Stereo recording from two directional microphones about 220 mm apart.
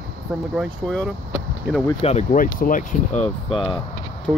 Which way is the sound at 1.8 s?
30° left (ahead or behind).